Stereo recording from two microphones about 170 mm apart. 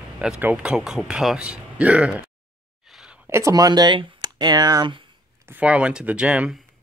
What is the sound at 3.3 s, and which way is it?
Speech, 20° right (ahead or behind).